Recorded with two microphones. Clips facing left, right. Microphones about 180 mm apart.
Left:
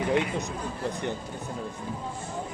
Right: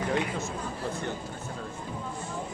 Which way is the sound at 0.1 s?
20° left (ahead or behind).